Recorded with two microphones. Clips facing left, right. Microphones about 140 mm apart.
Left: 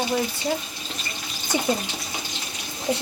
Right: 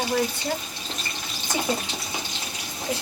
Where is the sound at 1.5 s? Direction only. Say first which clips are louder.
Left 3 dB; 20° left (ahead or behind).